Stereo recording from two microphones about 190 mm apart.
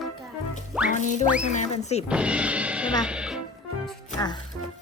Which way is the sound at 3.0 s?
5° right (ahead or behind).